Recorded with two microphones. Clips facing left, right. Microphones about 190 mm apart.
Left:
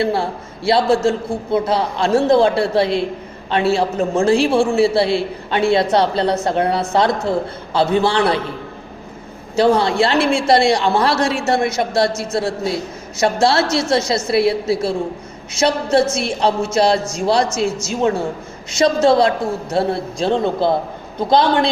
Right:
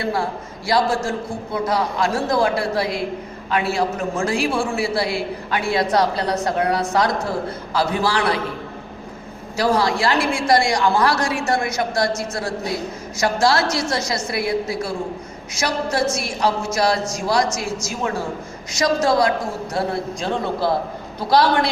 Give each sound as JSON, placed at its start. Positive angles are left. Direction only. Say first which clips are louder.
{"t": 0.0, "sound": "a man's voice", "louder": "left 4 dB", "side_deg": 30}
{"t": 9.6, "sound": "a man's voice", "louder": "left 5 dB", "side_deg": 25}